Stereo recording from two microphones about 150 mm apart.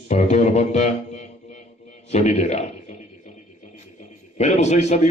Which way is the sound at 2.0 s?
45° left (ahead or behind).